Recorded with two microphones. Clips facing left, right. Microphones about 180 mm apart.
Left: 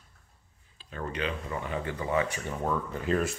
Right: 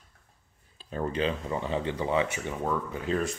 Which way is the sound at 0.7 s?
35° right (ahead or behind).